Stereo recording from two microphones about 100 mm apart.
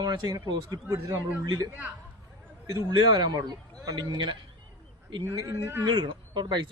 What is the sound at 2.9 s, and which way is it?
Speech, 45° right (ahead or behind).